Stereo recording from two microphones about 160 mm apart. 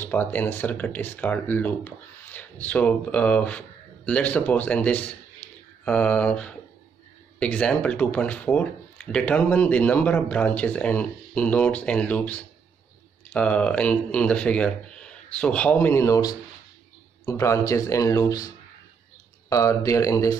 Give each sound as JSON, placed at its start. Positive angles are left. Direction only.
{"t": 0.0, "sound": "speech", "side_deg": 10}
{"t": 19.5, "sound": "speech", "side_deg": 20}